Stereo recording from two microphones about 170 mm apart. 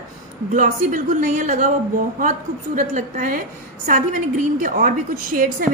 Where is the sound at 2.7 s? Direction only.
50° right (ahead or behind).